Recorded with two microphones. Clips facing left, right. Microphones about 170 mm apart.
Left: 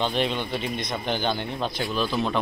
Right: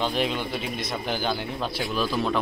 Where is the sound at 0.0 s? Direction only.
5° right (ahead or behind).